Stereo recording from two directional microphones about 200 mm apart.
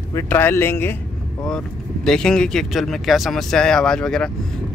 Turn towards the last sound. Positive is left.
turn(degrees=5)  # may be behind; listen again after turning